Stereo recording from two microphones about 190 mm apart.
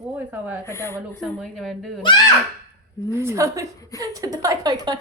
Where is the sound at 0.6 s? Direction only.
15° left (ahead or behind).